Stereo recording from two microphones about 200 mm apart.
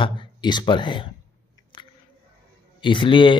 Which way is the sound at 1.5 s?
20° left (ahead or behind).